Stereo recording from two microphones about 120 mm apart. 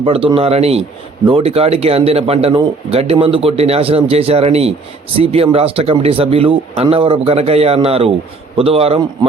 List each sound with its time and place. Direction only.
0.0 s a man's voice: 50° right (ahead or behind)